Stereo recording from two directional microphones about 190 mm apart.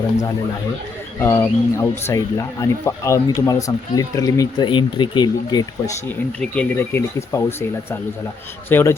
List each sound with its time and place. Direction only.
1.2 s speech: 10° left (ahead or behind)
6.4 s speech: 5° left (ahead or behind)
8.7 s speech: 10° left (ahead or behind)